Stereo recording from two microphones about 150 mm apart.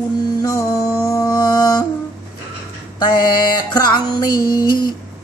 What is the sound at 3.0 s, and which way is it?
Music, 30° left (ahead or behind).